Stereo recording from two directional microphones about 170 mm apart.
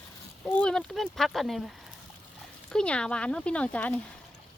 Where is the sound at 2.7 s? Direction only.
5° left (ahead or behind).